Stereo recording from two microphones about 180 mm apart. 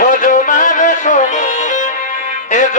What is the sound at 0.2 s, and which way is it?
Music, 45° left (ahead or behind).